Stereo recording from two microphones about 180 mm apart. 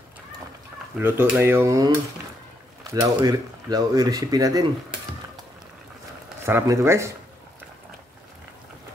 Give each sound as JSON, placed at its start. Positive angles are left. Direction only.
{"t": 0.9, "sound": "speech", "side_deg": -10}
{"t": 6.4, "sound": "speech", "side_deg": -15}